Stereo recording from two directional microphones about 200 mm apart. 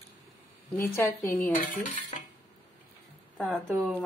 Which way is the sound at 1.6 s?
40° left (ahead or behind).